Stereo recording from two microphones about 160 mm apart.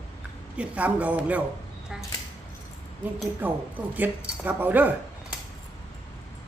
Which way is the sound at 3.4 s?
10° right (ahead or behind).